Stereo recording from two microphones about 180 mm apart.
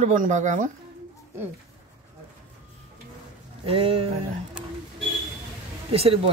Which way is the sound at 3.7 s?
30° right (ahead or behind).